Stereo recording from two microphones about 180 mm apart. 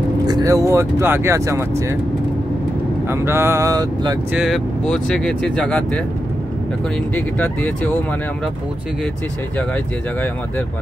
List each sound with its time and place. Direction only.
0.3 s speech: 20° right (ahead or behind)
3.1 s speech: 15° right (ahead or behind)
4.3 s speech: centre (ahead or behind)
7.2 s speech: 10° left (ahead or behind)